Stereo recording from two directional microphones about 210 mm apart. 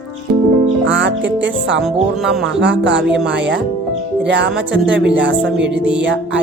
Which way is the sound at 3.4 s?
60° right (ahead or behind).